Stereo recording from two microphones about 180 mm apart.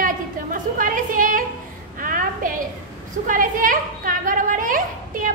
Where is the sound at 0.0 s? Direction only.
50° right (ahead or behind).